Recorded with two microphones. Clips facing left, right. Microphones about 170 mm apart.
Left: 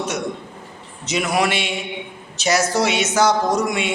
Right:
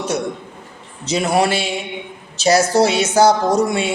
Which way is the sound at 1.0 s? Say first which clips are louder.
Right 3 dB; 30° right (ahead or behind).